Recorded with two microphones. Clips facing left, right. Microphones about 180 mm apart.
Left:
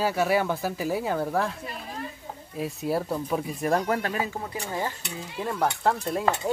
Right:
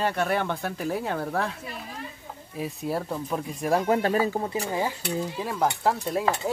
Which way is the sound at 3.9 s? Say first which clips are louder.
Right 4 dB; 30° right (ahead or behind).